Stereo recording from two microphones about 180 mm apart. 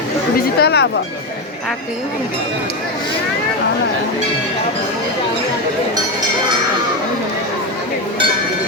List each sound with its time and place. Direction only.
0.6 s speech: 65° left (ahead or behind)